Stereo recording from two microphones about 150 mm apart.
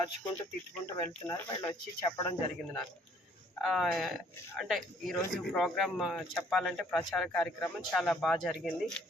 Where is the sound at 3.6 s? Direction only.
Centre (ahead or behind).